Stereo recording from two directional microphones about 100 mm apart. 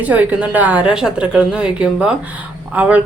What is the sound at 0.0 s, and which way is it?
A woman's voice, 15° right (ahead or behind).